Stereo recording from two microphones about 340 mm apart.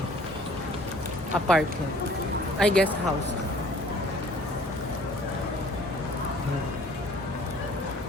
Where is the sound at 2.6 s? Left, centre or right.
Centre.